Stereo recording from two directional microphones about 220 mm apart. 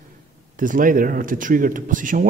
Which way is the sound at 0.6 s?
40° right (ahead or behind).